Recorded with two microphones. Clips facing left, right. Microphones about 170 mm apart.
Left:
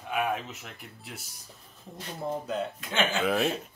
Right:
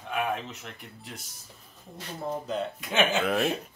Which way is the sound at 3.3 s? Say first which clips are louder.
Even; centre (ahead or behind).